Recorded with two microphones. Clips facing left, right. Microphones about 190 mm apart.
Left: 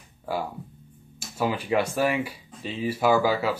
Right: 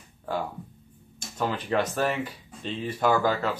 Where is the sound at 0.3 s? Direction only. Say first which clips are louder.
Left 1 dB; 10° left (ahead or behind).